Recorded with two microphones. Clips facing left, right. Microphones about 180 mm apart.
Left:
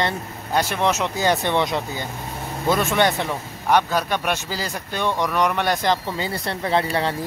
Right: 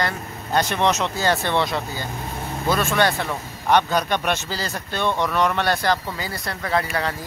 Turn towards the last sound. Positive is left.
turn(degrees=30)  # may be behind; listen again after turning